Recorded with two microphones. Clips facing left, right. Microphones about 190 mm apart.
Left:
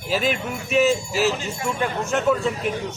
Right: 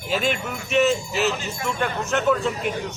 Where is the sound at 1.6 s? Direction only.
30° left (ahead or behind).